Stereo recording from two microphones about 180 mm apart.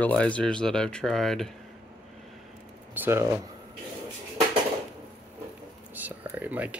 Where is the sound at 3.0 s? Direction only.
15° right (ahead or behind).